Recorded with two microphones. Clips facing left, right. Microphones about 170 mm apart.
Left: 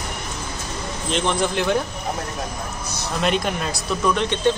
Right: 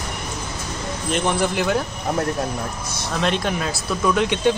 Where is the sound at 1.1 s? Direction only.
10° right (ahead or behind).